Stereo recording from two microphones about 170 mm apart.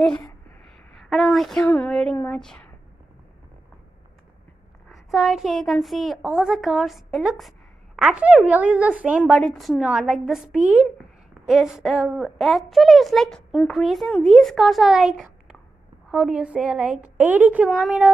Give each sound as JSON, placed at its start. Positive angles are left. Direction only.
{"t": 0.9, "sound": "a woman's voice", "side_deg": 0}
{"t": 4.8, "sound": "a woman's voice", "side_deg": 0}